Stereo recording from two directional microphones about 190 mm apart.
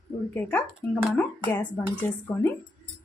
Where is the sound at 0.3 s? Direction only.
10° left (ahead or behind).